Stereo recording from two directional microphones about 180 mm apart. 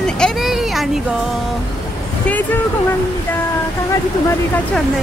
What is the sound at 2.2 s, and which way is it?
Speech, 10° left (ahead or behind).